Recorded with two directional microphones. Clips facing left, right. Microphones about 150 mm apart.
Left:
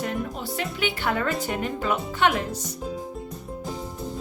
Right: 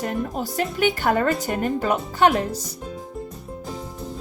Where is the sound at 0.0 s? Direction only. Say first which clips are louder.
Right 3 dB; 45° right (ahead or behind).